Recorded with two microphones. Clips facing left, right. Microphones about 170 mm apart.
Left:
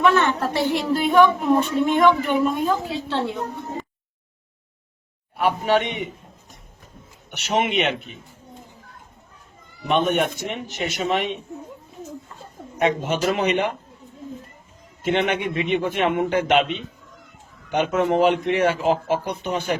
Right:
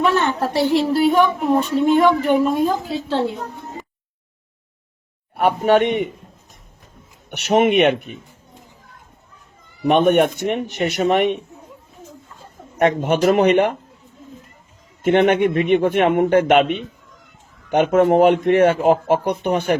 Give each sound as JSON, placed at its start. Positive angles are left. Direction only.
{"t": 0.0, "sound": "a sound", "side_deg": -35}
{"t": 1.0, "sound": "a woman's voice", "side_deg": -35}
{"t": 5.4, "sound": "a man's voice", "side_deg": -55}
{"t": 7.3, "sound": "speech", "side_deg": -60}
{"t": 9.8, "sound": "speech", "side_deg": -55}
{"t": 12.8, "sound": "speech", "side_deg": -55}
{"t": 15.0, "sound": "a man's voice", "side_deg": -55}